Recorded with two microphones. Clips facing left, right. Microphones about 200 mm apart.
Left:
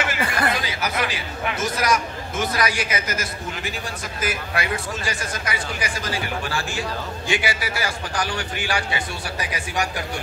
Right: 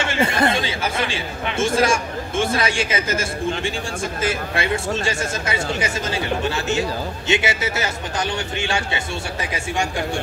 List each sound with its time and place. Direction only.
0.0 s speech: 25° right (ahead or behind)